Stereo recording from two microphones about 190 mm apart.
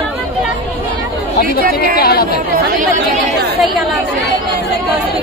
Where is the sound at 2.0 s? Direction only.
55° left (ahead or behind).